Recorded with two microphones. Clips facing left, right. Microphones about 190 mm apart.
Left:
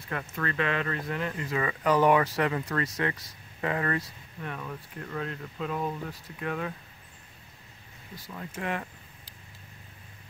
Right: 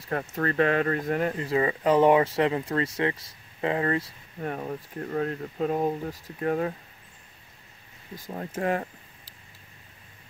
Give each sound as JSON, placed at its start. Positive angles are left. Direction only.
{"t": 0.1, "sound": "speech", "side_deg": -40}
{"t": 1.3, "sound": "speech", "side_deg": -30}
{"t": 4.4, "sound": "speech", "side_deg": -40}
{"t": 8.5, "sound": "speech", "side_deg": -40}